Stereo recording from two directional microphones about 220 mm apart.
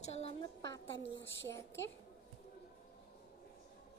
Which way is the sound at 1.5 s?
10° left (ahead or behind).